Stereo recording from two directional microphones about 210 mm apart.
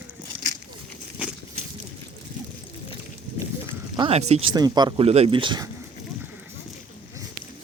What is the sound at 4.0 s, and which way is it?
Speech, 30° right (ahead or behind).